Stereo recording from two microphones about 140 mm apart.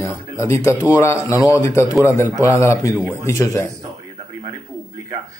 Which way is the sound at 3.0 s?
15° right (ahead or behind).